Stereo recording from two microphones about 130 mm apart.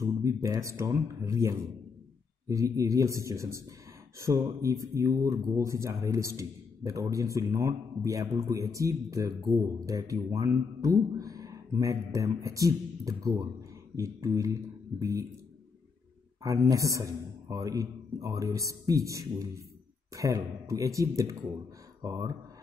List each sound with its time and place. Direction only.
0.0 s speech: 25° right (ahead or behind)
16.4 s speech: 25° right (ahead or behind)